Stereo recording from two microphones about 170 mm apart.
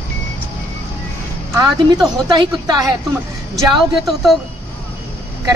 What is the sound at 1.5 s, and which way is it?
Speech, 25° right (ahead or behind).